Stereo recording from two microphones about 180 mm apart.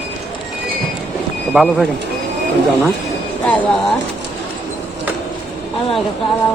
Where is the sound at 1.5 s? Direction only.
Centre (ahead or behind).